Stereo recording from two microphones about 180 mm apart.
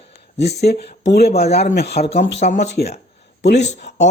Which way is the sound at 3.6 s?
40° left (ahead or behind).